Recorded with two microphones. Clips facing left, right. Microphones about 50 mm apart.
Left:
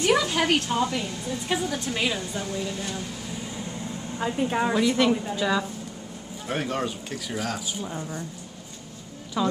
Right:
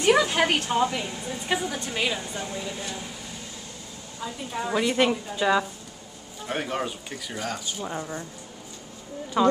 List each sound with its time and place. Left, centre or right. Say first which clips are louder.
0.0 s a woman's voice: right 2 dB; centre
4.2 s a woman's voice: left 7 dB; left
4.7 s a woman's voice: right 2 dB; centre
7.8 s a woman's voice: right 1 dB; centre
9.4 s a woman's voice: right 5 dB; centre